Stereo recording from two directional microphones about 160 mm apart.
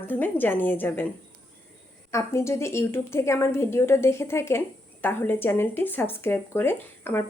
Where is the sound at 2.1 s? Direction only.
20° left (ahead or behind).